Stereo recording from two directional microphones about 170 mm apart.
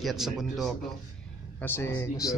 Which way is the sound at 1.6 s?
10° left (ahead or behind).